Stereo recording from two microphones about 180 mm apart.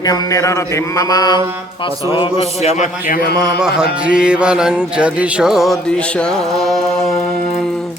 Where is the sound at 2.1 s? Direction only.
30° left (ahead or behind); by 3.4 s 50° left (ahead or behind).